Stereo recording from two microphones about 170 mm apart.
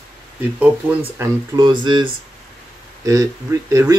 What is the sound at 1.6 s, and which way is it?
Speech, 25° right (ahead or behind).